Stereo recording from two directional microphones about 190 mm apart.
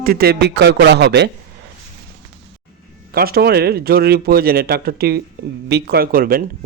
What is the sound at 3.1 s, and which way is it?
A man's voice, 55° right (ahead or behind).